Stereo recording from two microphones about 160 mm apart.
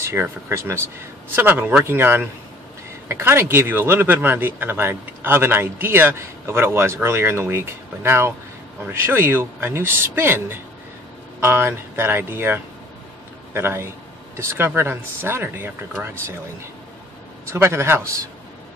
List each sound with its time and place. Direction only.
0.0 s speech: 15° right (ahead or behind)
17.5 s speech: 15° right (ahead or behind)